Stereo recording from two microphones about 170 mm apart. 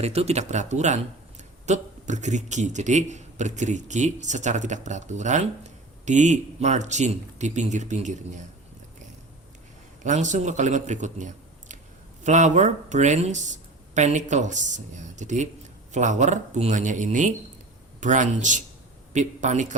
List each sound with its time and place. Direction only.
0.0 s speech: 40° right (ahead or behind)
10.0 s speech: 45° right (ahead or behind)